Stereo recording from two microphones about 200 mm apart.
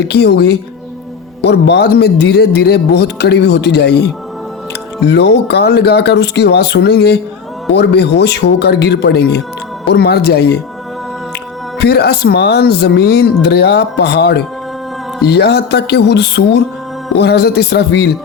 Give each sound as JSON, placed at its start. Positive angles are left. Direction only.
{"t": 0.1, "sound": "speech", "side_deg": 55}
{"t": 11.8, "sound": "speech", "side_deg": 55}